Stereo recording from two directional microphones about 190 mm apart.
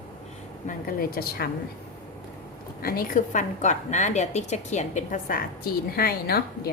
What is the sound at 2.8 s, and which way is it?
A woman's voice, 50° left (ahead or behind).